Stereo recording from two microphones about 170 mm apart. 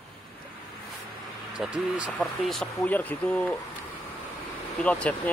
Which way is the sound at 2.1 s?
5° left (ahead or behind).